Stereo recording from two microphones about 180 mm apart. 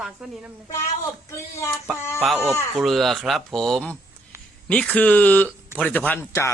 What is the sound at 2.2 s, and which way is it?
Speech, centre (ahead or behind).